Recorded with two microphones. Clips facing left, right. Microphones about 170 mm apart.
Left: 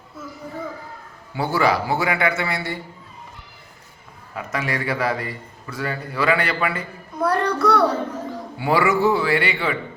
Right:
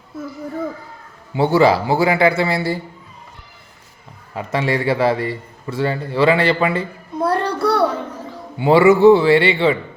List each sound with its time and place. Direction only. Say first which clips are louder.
1.4 s a man's voice: right 6 dB; 25° right (ahead or behind)
4.4 s a man's voice: right 6 dB; 30° right (ahead or behind)